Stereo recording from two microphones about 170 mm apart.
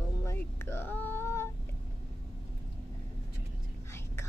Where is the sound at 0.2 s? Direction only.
15° left (ahead or behind).